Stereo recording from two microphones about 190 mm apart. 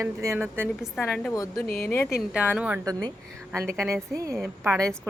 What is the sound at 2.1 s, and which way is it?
Speech, 5° right (ahead or behind).